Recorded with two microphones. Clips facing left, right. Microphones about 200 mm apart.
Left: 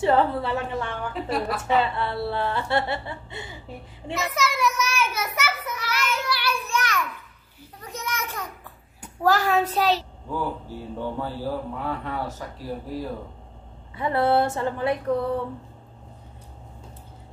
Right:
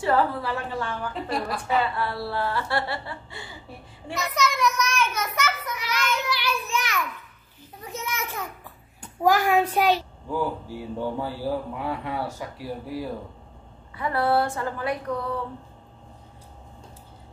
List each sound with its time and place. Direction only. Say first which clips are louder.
0.0 s speech: left 2 dB; 25° left (ahead or behind)
1.1 s a woman's voice: left 5 dB; centre (ahead or behind)
1.5 s speech: left 2 dB; 25° left (ahead or behind)
4.4 s a child's voice: right 1 dB; 5° left (ahead or behind)
5.9 s child singing: right 1 dB; 10° left (ahead or behind)
6.3 s child singing: left 1 dB; 10° right (ahead or behind)
7.8 s a sound: even; 10° right (ahead or behind)
9.2 s a man's voice: right 1 dB; 10° right (ahead or behind)
13.9 s speech: left 2 dB; 25° left (ahead or behind)